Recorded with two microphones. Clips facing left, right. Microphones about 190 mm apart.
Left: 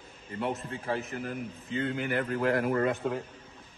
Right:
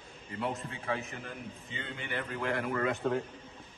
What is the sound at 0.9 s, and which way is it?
Speech, centre (ahead or behind).